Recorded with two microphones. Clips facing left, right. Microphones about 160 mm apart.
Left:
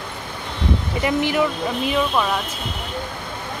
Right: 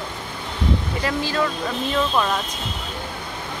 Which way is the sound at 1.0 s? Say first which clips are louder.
Left 5 dB; 20° left (ahead or behind).